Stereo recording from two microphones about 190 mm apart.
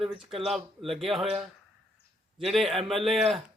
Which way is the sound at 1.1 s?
Centre (ahead or behind).